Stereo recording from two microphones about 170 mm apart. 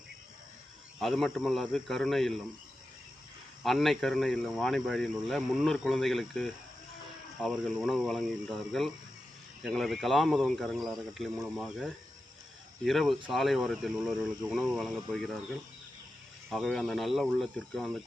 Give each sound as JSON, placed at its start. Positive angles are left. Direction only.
{"t": 0.9, "sound": "speech", "side_deg": 0}
{"t": 3.6, "sound": "speech", "side_deg": 0}
{"t": 16.5, "sound": "speech", "side_deg": 0}